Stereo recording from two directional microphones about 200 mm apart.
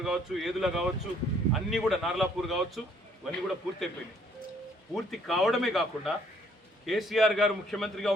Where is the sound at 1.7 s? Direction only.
Centre (ahead or behind).